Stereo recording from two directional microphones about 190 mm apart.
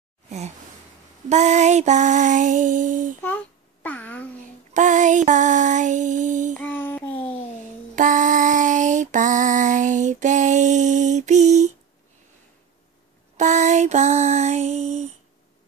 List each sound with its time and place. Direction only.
1.3 s a sound: 35° right (ahead or behind)
3.8 s babbling: 5° left (ahead or behind)
4.7 s female singing: 40° right (ahead or behind)
6.6 s child singing: 10° left (ahead or behind)
7.9 s female singing: 45° right (ahead or behind)
13.4 s a sound: 40° right (ahead or behind)